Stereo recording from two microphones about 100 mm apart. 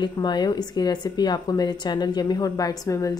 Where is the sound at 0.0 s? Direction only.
50° left (ahead or behind).